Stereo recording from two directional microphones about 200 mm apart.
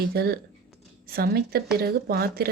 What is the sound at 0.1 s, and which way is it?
Speech, 50° right (ahead or behind).